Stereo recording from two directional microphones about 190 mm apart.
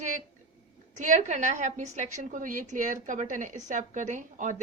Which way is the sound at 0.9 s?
40° right (ahead or behind).